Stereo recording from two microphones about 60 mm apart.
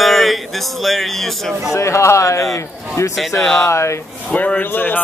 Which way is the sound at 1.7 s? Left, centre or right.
Left.